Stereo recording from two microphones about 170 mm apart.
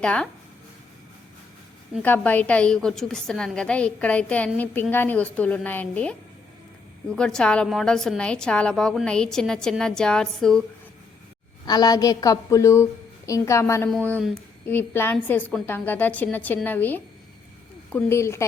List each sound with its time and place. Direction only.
0.0 s a woman's voice: 5° left (ahead or behind)
2.0 s a woman's voice: 10° left (ahead or behind)
11.6 s a woman's voice: 25° left (ahead or behind)
13.9 s a woman's voice: 5° left (ahead or behind)